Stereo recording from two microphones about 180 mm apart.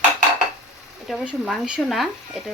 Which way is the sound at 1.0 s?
Centre (ahead or behind).